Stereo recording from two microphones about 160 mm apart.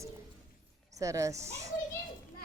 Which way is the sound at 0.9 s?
20° right (ahead or behind).